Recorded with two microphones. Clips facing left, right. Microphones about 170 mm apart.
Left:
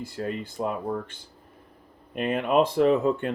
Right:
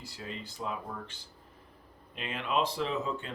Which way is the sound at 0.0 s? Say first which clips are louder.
Left 11 dB; 50° left (ahead or behind).